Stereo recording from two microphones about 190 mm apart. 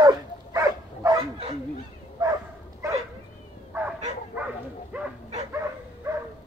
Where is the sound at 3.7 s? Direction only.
10° right (ahead or behind).